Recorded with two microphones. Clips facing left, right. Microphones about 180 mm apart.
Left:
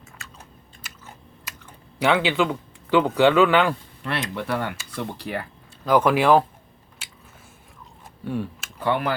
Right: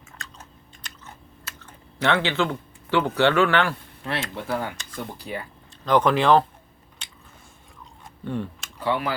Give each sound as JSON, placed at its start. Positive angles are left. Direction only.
{"t": 0.2, "sound": "chewing", "side_deg": 5}
{"t": 1.5, "sound": "speech", "side_deg": 10}
{"t": 4.4, "sound": "speech", "side_deg": 70}
{"t": 5.8, "sound": "speech", "side_deg": 5}
{"t": 7.0, "sound": "biting", "side_deg": 5}
{"t": 8.2, "sound": "speech", "side_deg": 10}
{"t": 8.8, "sound": "speech", "side_deg": 55}